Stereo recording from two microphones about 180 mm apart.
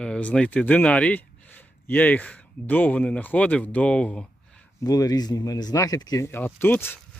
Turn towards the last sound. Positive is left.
turn(degrees=10)  # may be behind; listen again after turning